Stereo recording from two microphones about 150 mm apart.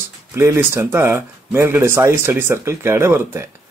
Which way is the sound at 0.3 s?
15° right (ahead or behind).